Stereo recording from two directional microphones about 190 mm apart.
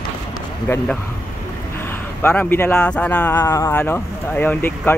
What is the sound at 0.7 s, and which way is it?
Speech, 10° left (ahead or behind).